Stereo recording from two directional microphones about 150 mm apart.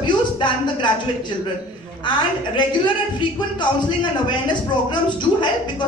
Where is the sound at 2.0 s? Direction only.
30° left (ahead or behind).